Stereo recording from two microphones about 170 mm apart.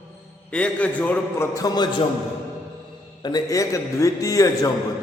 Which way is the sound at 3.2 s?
25° left (ahead or behind).